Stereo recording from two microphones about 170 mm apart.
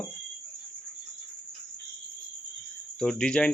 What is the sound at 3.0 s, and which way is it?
Speech, 5° left (ahead or behind).